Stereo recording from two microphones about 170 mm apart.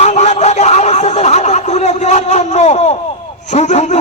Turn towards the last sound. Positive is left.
turn(degrees=40)  # may be behind; listen again after turning